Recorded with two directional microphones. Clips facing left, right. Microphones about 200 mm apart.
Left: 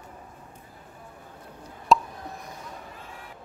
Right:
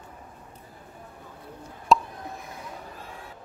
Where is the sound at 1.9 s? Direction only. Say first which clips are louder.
Even; centre (ahead or behind).